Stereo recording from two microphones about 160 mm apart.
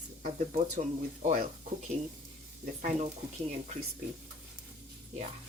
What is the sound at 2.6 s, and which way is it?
Speech, 55° right (ahead or behind).